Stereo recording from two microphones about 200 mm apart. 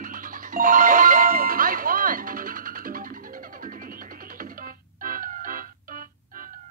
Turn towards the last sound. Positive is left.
turn(degrees=-45)  # may be behind; listen again after turning